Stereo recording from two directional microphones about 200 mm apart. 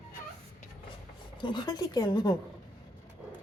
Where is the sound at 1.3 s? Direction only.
25° left (ahead or behind).